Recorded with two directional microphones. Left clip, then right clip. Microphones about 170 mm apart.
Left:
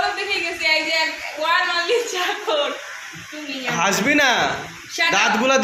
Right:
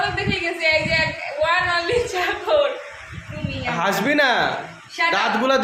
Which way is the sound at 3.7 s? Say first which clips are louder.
Left 1 dB; 10° right (ahead or behind).